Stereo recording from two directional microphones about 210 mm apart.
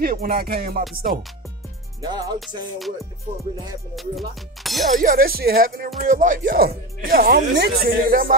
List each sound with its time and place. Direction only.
0.0 s speech: 45° right (ahead or behind)
2.0 s speech: 20° right (ahead or behind)
3.9 s music: centre (ahead or behind)
4.9 s speech: 40° right (ahead or behind)